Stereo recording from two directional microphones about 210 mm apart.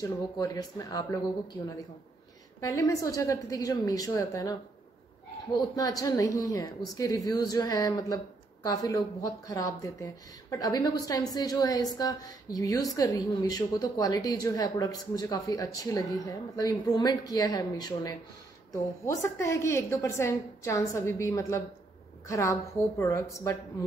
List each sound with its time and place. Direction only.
0.4 s a woman's voice: 15° left (ahead or behind)